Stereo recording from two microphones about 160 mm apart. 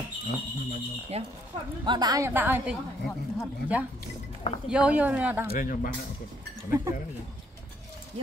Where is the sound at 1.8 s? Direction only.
25° right (ahead or behind); by 5.4 s 10° right (ahead or behind).